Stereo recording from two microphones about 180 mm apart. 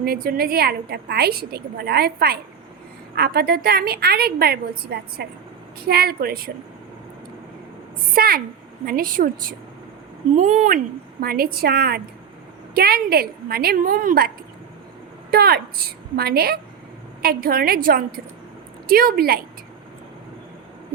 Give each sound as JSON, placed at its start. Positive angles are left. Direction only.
{"t": 0.0, "sound": "a woman's voice", "side_deg": -55}
{"t": 8.1, "sound": "a woman's voice", "side_deg": -55}
{"t": 11.2, "sound": "a woman's voice", "side_deg": -55}
{"t": 15.3, "sound": "a woman's voice", "side_deg": -55}